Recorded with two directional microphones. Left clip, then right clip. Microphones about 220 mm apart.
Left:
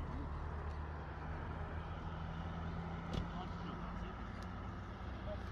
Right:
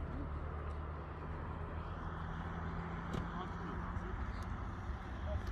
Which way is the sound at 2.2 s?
35° left (ahead or behind).